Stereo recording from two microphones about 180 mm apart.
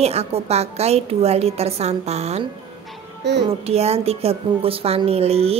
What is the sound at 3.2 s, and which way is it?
Speech, 70° right (ahead or behind).